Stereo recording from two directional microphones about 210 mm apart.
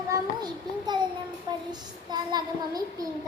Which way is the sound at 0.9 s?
20° right (ahead or behind).